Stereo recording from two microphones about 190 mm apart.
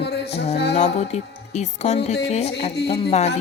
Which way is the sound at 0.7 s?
35° left (ahead or behind).